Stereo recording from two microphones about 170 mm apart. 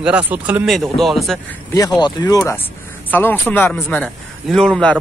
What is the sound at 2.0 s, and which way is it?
Speech, 25° left (ahead or behind).